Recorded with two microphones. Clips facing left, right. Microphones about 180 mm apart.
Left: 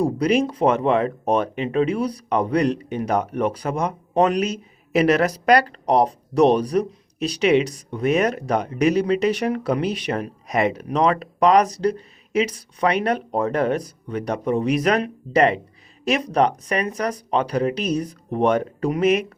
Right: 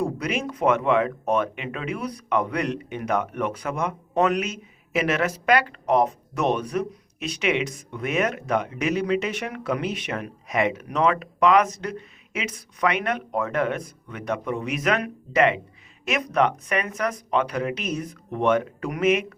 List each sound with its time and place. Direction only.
0.0 s speech: 35° left (ahead or behind)